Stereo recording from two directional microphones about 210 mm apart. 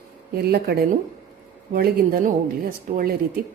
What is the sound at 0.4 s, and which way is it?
Speech, 50° right (ahead or behind).